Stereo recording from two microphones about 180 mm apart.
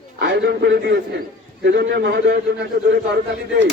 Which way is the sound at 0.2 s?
65° right (ahead or behind).